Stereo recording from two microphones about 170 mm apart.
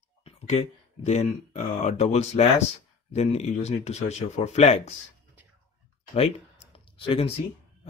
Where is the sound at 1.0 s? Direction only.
40° left (ahead or behind).